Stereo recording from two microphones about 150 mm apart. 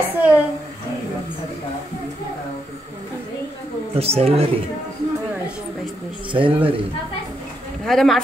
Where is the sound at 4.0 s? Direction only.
40° right (ahead or behind).